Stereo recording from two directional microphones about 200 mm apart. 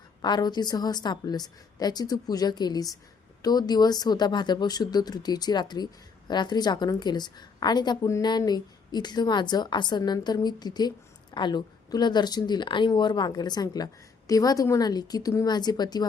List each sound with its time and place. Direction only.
0.2 s speech: 20° left (ahead or behind)